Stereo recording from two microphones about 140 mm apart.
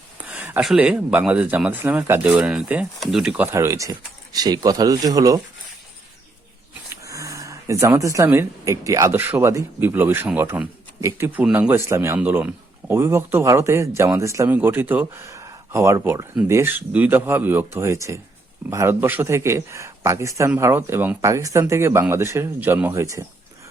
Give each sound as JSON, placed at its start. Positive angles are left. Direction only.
{"t": 0.2, "sound": "a sound", "side_deg": -10}
{"t": 0.6, "sound": "speech", "side_deg": -5}
{"t": 3.4, "sound": "speech", "side_deg": -20}
{"t": 7.0, "sound": "speech", "side_deg": -25}